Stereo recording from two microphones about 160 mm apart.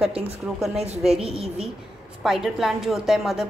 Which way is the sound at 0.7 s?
40° right (ahead or behind).